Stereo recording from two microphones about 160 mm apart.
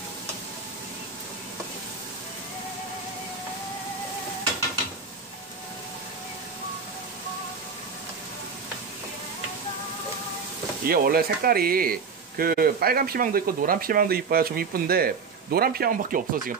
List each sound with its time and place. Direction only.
10.9 s speech: 70° right (ahead or behind)